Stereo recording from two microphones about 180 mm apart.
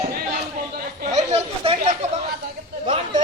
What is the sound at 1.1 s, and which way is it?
Chatter, 40° right (ahead or behind).